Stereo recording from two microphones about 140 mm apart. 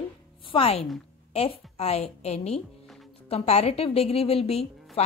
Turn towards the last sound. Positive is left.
turn(degrees=45)  # may be behind; listen again after turning